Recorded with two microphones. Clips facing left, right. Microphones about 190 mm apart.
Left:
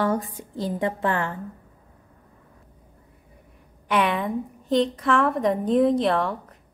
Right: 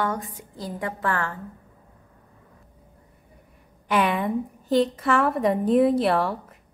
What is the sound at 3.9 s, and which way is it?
A woman's voice, centre (ahead or behind).